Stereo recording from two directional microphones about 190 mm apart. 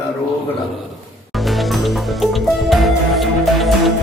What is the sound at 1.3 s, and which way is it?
Music, centre (ahead or behind).